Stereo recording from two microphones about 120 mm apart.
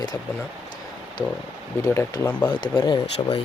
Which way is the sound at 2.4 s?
40° left (ahead or behind).